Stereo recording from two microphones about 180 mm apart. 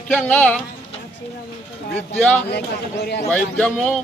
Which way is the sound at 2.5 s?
65° left (ahead or behind).